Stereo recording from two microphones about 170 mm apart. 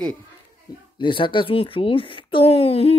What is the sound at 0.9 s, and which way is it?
Speech, 30° left (ahead or behind).